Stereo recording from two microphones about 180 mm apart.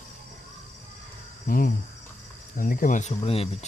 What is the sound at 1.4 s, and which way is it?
Cricket, 50° left (ahead or behind).